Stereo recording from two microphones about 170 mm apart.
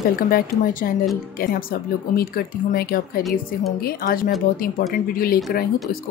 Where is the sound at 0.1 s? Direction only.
60° left (ahead or behind).